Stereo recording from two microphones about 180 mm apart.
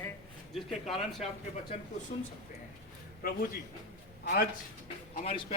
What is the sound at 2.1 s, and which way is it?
Speech, 40° left (ahead or behind).